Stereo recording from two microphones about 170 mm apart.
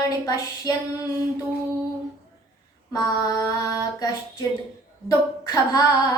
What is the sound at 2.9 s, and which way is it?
Female singing, 20° left (ahead or behind).